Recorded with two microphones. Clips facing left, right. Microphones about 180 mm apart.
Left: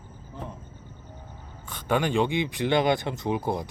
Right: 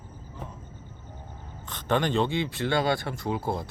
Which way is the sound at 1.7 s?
10° left (ahead or behind).